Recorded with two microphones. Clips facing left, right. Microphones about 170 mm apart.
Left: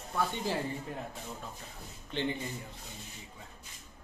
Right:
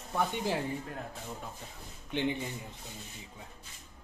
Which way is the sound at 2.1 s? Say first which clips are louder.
Right 2 dB; 15° right (ahead or behind).